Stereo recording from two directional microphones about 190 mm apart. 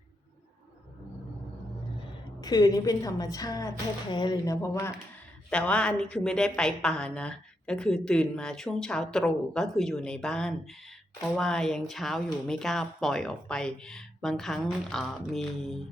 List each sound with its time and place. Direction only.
2.4 s a woman's voice: 20° left (ahead or behind); by 15.8 s centre (ahead or behind)